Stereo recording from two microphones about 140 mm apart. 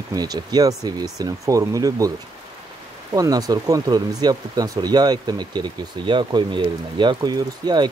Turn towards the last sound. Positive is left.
turn(degrees=-30)  # may be behind; listen again after turning